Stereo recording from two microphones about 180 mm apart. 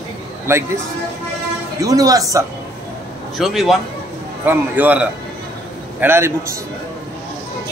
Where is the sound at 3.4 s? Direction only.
Centre (ahead or behind).